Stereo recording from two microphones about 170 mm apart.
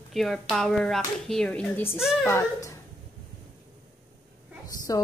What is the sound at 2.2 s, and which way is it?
Speech, 15° left (ahead or behind).